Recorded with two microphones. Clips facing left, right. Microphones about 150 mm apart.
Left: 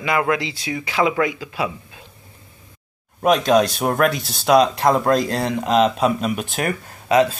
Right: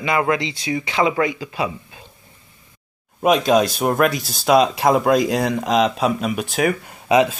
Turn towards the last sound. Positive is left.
turn(degrees=-15)  # may be behind; listen again after turning